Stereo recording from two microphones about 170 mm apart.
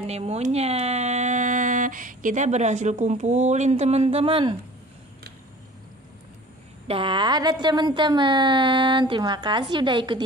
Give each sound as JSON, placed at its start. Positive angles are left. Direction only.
{"t": 0.0, "sound": "speech", "side_deg": -40}
{"t": 6.9, "sound": "a woman's voice", "side_deg": -30}